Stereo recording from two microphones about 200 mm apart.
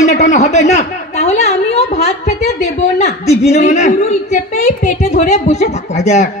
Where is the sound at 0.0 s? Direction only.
35° left (ahead or behind).